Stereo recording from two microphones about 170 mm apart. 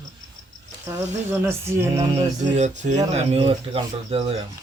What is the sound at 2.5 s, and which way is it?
Speech, 45° right (ahead or behind).